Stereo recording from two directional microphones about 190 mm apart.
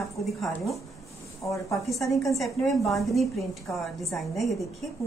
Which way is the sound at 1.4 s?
15° left (ahead or behind).